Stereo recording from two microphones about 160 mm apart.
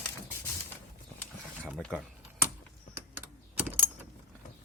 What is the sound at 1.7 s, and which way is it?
Speech, centre (ahead or behind).